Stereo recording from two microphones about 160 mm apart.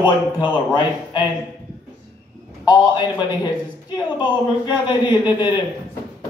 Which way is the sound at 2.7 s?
25° left (ahead or behind).